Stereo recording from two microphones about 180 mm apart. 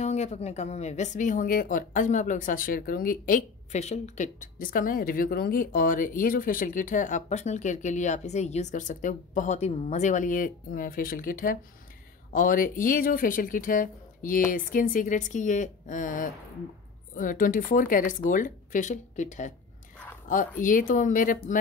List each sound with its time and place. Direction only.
0.0 s speech: 40° left (ahead or behind)
20.6 s speech: 45° left (ahead or behind)